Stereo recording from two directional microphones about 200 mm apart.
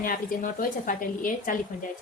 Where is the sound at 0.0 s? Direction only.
45° left (ahead or behind).